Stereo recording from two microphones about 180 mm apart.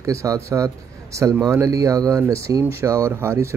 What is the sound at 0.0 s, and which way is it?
Speech, 20° right (ahead or behind).